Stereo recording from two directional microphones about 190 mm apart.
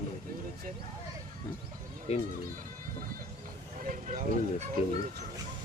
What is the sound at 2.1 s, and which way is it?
Speech, 35° left (ahead or behind).